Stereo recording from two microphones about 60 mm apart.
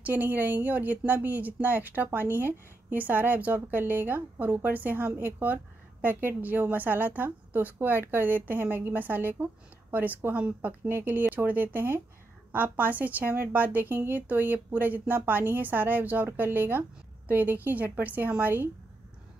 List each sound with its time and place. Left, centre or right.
0.0 s a woman's voice: right